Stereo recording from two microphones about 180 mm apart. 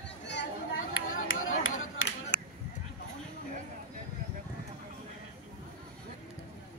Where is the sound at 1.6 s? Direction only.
90° left.